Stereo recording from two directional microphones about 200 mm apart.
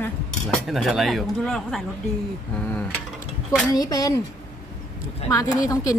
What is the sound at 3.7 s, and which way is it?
Speech, 15° left (ahead or behind).